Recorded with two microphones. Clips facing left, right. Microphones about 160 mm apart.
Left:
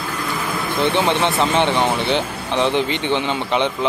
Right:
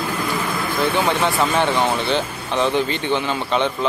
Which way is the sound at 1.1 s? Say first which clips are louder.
Left 1 dB; 20° left (ahead or behind).